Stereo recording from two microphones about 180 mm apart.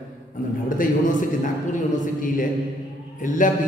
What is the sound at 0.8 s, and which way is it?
Speech, 45° left (ahead or behind).